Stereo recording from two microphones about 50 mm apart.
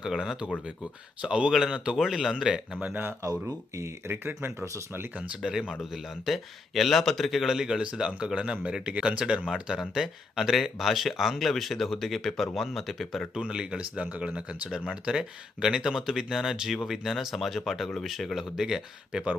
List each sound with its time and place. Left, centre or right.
0.0 s speech: centre
1.2 s speech: right
2.0 s speech: centre
2.3 s speech: centre
2.9 s speech: right
5.5 s speech: centre
5.8 s speech: centre
13.3 s speech: centre